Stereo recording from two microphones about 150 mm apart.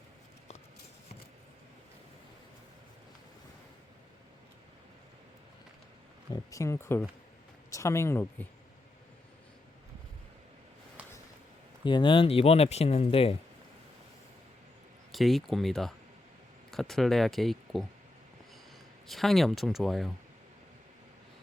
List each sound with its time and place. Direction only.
6.3 s speech: 20° left (ahead or behind)
11.0 s a sound: 10° right (ahead or behind)
11.9 s speech: 30° left (ahead or behind)
15.1 s speech: centre (ahead or behind)
19.0 s speech: centre (ahead or behind)